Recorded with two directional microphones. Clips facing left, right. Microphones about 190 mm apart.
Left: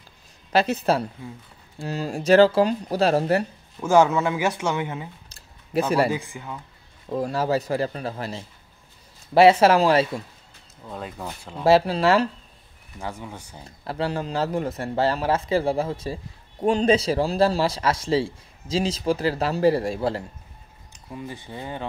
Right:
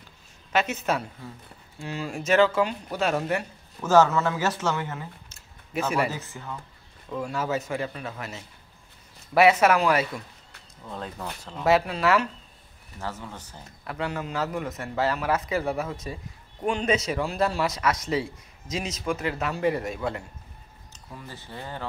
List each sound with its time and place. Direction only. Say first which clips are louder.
0.5 s speech: left 5 dB; 35° left (ahead or behind)
3.8 s speech: left 2 dB; 10° left (ahead or behind)
5.3 s a sound: left 8 dB; 35° left (ahead or behind)
6.0 s speech: left 6 dB; 15° left (ahead or behind)
7.1 s speech: left 5 dB; 35° left (ahead or behind)
10.9 s speech: left 1 dB; 5° left (ahead or behind)
11.6 s speech: left 4 dB; 30° left (ahead or behind)
13.0 s speech: left 2 dB; 15° left (ahead or behind)
13.7 s speech: left 4 dB; 30° left (ahead or behind)
20.9 s speech: left 7 dB; 15° left (ahead or behind)